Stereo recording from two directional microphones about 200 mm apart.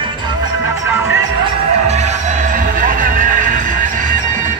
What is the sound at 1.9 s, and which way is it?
Music, 35° right (ahead or behind).